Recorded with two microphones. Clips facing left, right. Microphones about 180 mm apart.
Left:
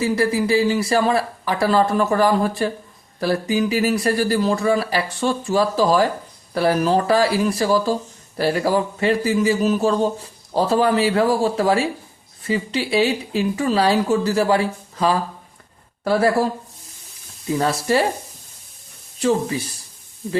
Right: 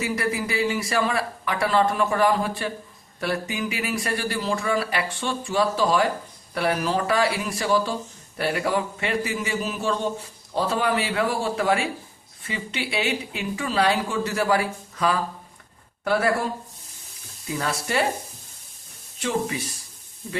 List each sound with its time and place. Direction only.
0.0 s speech: 30° left (ahead or behind)
17.5 s speech: 35° left (ahead or behind)
19.2 s speech: 35° left (ahead or behind)